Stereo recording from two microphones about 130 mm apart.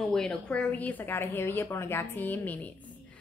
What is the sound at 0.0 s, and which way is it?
A woman's voice, 5° left (ahead or behind).